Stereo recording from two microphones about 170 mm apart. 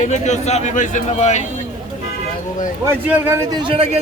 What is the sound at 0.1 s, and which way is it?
Speech, 40° left (ahead or behind).